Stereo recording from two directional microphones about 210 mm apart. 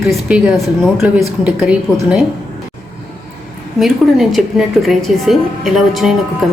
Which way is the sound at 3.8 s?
Centre (ahead or behind).